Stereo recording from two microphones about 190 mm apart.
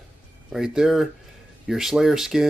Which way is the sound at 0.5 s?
Centre (ahead or behind).